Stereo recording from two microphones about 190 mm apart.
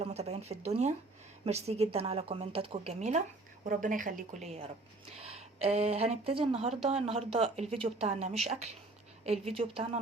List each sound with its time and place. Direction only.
0.0 s a woman's voice: 35° right (ahead or behind)